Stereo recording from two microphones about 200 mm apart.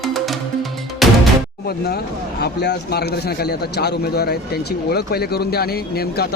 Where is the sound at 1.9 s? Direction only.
55° left (ahead or behind).